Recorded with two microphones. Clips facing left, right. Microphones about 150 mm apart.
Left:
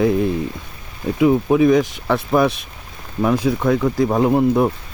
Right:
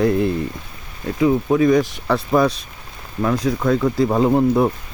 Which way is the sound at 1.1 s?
15° left (ahead or behind).